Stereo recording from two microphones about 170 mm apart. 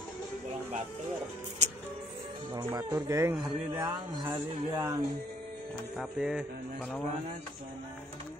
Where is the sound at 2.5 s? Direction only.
25° right (ahead or behind).